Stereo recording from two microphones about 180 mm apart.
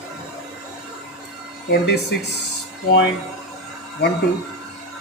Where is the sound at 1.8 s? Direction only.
70° left (ahead or behind).